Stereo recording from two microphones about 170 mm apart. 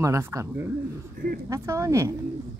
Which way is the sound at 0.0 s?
20° right (ahead or behind).